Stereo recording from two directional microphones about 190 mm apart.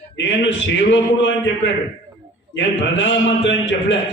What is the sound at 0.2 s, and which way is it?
A man's voice, 75° left (ahead or behind).